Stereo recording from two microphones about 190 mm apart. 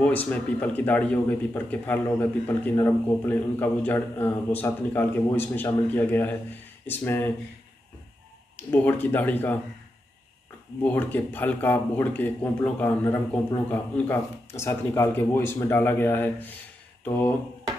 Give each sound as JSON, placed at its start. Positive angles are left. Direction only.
{"t": 0.0, "sound": "speech", "side_deg": 10}
{"t": 8.5, "sound": "speech", "side_deg": 10}
{"t": 10.8, "sound": "speech", "side_deg": 10}